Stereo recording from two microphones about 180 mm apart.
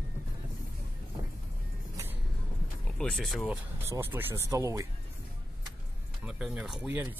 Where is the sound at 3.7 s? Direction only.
15° right (ahead or behind).